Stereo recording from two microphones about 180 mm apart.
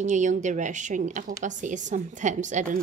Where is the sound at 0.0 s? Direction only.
40° right (ahead or behind).